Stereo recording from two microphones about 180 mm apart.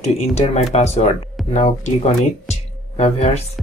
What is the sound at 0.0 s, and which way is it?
Speech, 35° left (ahead or behind).